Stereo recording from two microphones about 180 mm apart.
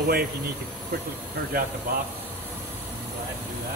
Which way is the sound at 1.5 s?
55° right (ahead or behind).